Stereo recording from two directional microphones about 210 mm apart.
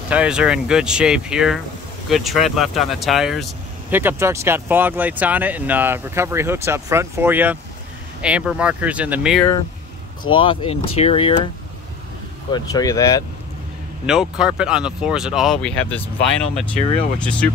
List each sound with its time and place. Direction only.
0.1 s speech: 5° right (ahead or behind)
4.0 s speech: 10° right (ahead or behind)
10.3 s speech: 25° left (ahead or behind)
12.4 s speech: 20° left (ahead or behind)
14.0 s speech: 5° right (ahead or behind)
17.2 s speech: 5° left (ahead or behind)